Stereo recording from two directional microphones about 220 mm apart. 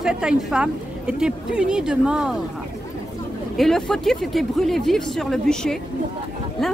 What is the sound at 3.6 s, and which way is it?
A woman's voice, centre (ahead or behind).